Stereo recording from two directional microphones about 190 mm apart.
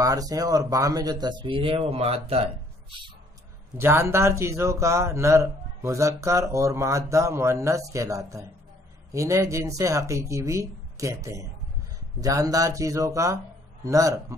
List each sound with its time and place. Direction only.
0.0 s speech: 20° right (ahead or behind)
3.7 s a man's voice: 15° right (ahead or behind)